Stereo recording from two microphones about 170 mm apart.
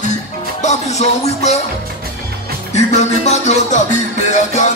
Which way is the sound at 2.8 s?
40° left (ahead or behind).